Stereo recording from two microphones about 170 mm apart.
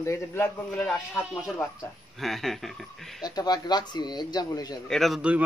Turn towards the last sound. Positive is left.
turn(degrees=-5)  # may be behind; listen again after turning